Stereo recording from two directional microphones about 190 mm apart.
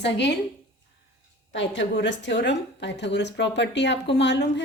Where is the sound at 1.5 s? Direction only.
75° left (ahead or behind).